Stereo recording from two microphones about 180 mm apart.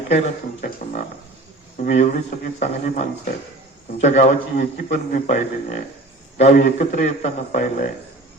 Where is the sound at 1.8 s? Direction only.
40° left (ahead or behind).